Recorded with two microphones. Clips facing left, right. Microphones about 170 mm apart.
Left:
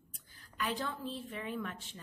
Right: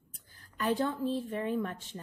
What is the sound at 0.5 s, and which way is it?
A woman's voice, 45° right (ahead or behind).